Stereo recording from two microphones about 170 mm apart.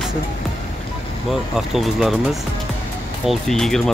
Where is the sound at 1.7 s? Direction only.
Centre (ahead or behind).